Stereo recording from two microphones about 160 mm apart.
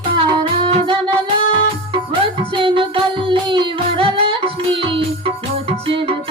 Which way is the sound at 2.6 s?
30° right (ahead or behind).